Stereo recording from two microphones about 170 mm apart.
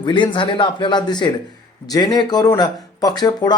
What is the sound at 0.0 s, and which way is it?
Speech, 30° left (ahead or behind).